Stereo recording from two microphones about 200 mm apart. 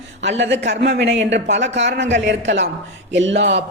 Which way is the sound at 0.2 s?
65° right (ahead or behind).